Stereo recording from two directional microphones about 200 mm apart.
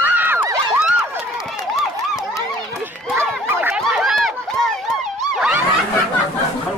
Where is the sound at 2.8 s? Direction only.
10° right (ahead or behind).